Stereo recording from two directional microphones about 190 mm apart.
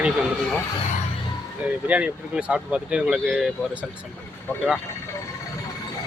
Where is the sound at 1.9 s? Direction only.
5° right (ahead or behind).